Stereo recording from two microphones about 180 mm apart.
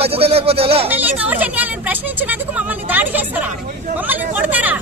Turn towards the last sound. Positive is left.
turn(degrees=-10)  # may be behind; listen again after turning